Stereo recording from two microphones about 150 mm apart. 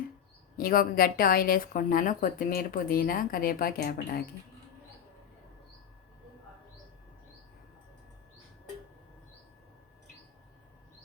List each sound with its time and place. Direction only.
0.5 s a woman's voice: 75° left (ahead or behind); by 4.2 s 90° left